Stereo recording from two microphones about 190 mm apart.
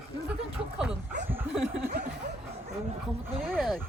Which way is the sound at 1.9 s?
60° right (ahead or behind).